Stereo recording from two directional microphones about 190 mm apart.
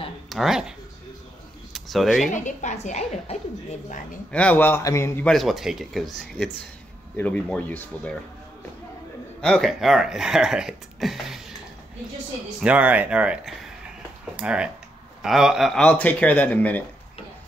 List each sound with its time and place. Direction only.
0.3 s speech: centre (ahead or behind)
2.3 s a woman's voice: 40° left (ahead or behind)
4.3 s a man's voice: 5° left (ahead or behind)
9.4 s speech: centre (ahead or behind)
12.6 s a man's voice: 10° right (ahead or behind); by 16.8 s 10° left (ahead or behind)